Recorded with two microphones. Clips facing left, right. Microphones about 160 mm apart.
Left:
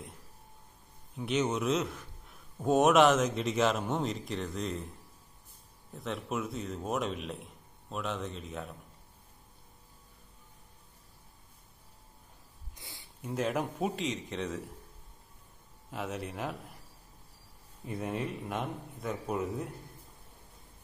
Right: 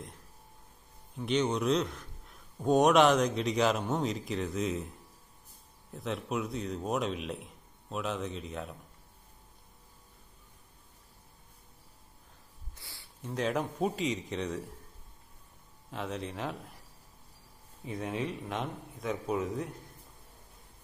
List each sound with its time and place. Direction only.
1.1 s a man's voice: 5° left (ahead or behind)
5.9 s a man's voice: centre (ahead or behind)
12.7 s a sound: 20° left (ahead or behind)
13.3 s a man's voice: 5° left (ahead or behind)
15.9 s a man's voice: 5° left (ahead or behind)
17.8 s a man's voice: centre (ahead or behind)